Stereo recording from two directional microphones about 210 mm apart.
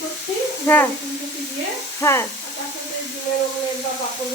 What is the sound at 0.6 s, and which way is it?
Speech, 10° left (ahead or behind).